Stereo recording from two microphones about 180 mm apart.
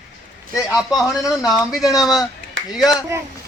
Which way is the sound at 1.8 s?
20° left (ahead or behind).